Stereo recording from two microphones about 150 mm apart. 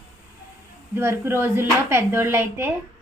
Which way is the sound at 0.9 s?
15° right (ahead or behind).